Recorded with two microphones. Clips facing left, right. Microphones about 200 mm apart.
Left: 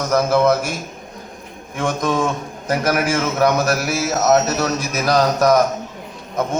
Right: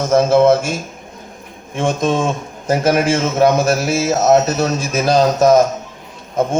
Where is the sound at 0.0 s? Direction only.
25° right (ahead or behind).